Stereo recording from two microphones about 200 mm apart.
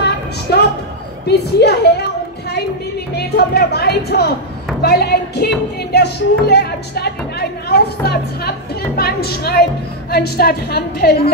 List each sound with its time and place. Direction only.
1.2 s a woman's voice: 55° left (ahead or behind)
3.2 s speech: 55° left (ahead or behind)